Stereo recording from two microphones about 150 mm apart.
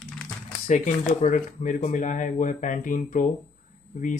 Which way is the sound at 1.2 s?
60° left (ahead or behind).